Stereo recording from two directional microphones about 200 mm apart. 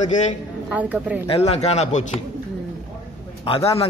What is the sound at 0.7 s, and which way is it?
Speech, 5° right (ahead or behind).